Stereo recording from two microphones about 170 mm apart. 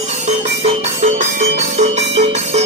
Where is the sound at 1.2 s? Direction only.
45° right (ahead or behind).